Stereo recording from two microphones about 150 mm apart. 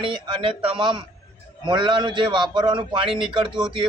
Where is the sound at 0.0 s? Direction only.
35° right (ahead or behind).